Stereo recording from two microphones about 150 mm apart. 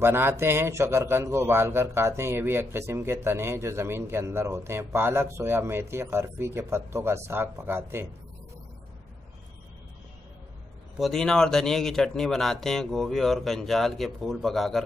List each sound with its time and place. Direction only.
0.0 s speech: 15° right (ahead or behind)
11.0 s speech: centre (ahead or behind)